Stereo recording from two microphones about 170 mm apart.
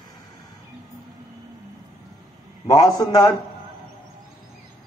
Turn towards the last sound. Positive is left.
turn(degrees=20)  # may be behind; listen again after turning